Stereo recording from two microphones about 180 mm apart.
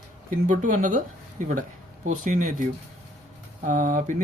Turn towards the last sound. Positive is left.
turn(degrees=-45)  # may be behind; listen again after turning